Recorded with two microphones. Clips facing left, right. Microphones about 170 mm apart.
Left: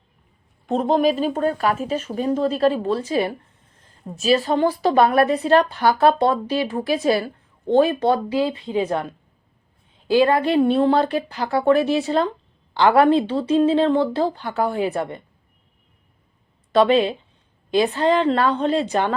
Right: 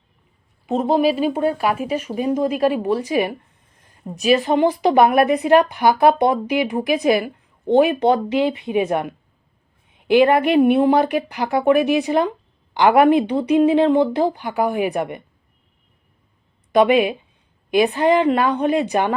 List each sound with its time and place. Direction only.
0.7 s a woman's voice: 5° right (ahead or behind)
16.7 s a woman's voice: 15° right (ahead or behind)